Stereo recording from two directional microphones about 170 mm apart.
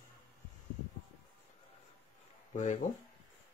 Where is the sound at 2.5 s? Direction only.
45° left (ahead or behind).